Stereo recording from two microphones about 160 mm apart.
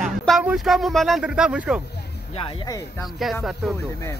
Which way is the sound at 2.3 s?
35° left (ahead or behind).